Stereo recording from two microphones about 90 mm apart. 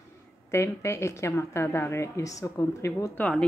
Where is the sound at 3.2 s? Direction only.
10° left (ahead or behind).